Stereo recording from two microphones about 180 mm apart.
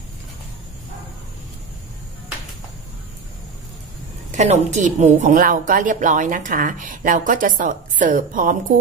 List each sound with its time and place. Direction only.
4.3 s a woman's voice: 40° right (ahead or behind)